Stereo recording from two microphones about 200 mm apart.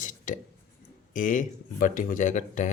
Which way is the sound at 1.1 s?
40° left (ahead or behind).